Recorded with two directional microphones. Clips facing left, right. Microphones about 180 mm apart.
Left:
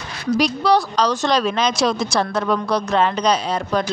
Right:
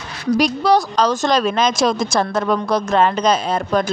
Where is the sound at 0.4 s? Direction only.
45° right (ahead or behind).